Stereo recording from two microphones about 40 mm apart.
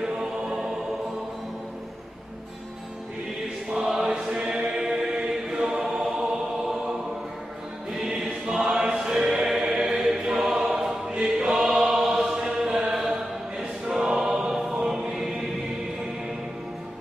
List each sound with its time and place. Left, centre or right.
0.4 s music: centre
3.6 s chant: centre
6.0 s music: centre
7.9 s choir: centre
9.5 s choir: centre